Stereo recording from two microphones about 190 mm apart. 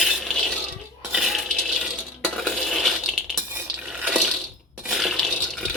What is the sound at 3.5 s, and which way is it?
Water, 5° right (ahead or behind).